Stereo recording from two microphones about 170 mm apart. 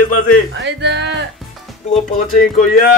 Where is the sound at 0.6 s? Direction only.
90° right.